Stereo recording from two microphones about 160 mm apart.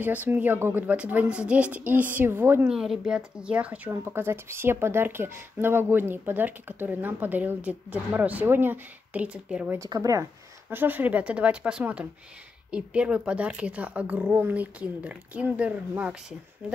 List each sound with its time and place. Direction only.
0.0 s a woman's voice: 10° right (ahead or behind)
9.8 s a woman's voice: 20° right (ahead or behind)